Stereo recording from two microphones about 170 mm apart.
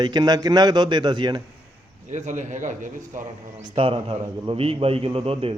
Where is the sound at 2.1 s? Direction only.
45° right (ahead or behind).